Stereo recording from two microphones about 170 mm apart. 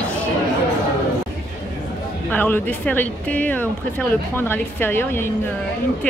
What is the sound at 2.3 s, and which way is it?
Speech, 10° left (ahead or behind).